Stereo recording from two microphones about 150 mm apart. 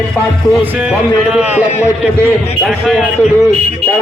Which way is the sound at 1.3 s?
5° right (ahead or behind).